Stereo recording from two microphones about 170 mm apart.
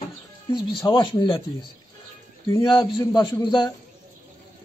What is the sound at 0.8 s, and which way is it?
Speech, 30° left (ahead or behind).